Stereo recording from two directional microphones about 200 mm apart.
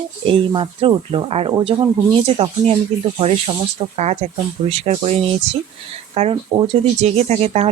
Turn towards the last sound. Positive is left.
turn(degrees=-35)  # may be behind; listen again after turning